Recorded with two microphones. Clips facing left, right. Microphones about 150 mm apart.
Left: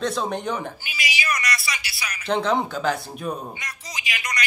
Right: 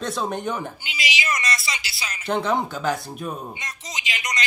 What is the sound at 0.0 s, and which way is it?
Speech, centre (ahead or behind).